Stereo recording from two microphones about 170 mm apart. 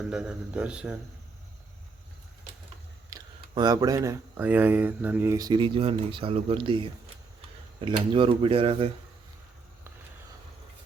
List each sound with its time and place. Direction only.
0.0 s speech: 5° right (ahead or behind)
3.1 s speech: 25° right (ahead or behind)